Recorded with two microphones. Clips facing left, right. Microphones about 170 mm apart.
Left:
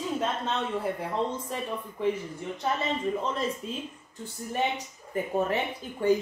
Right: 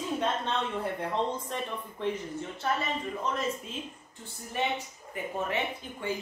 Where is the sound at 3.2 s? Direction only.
30° left (ahead or behind).